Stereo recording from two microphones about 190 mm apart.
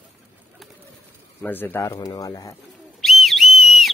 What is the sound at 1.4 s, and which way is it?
Speech, 10° left (ahead or behind).